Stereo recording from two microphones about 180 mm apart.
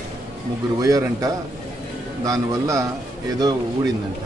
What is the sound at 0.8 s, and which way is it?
Speech, 20° right (ahead or behind).